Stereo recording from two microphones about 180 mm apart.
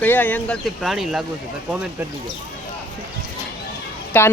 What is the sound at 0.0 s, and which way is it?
Speech, 10° left (ahead or behind).